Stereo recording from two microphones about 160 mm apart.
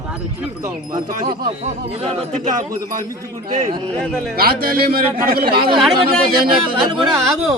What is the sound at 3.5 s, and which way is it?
Speech, 45° right (ahead or behind).